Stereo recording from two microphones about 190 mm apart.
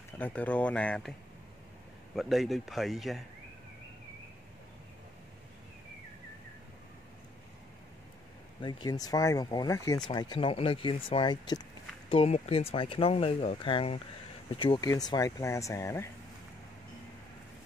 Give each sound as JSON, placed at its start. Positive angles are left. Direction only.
{"t": 0.2, "sound": "speech", "side_deg": 5}
{"t": 2.1, "sound": "speech", "side_deg": 0}
{"t": 8.5, "sound": "speech", "side_deg": 25}